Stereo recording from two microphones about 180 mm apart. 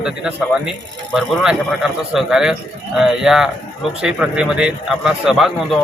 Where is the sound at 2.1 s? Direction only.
5° right (ahead or behind).